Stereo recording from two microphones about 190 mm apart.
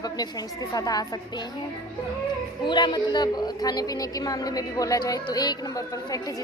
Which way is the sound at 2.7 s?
25° left (ahead or behind).